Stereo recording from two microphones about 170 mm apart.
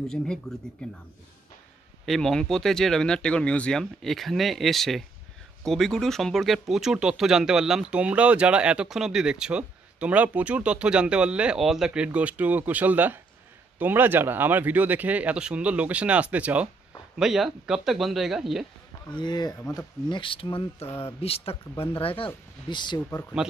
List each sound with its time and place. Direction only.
0.5 s speech: 5° left (ahead or behind)
2.0 s speech: centre (ahead or behind)
19.1 s speech: 25° left (ahead or behind)
22.9 s speech: 15° left (ahead or behind)